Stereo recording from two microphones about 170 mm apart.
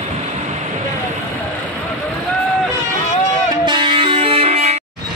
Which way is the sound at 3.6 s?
30° right (ahead or behind).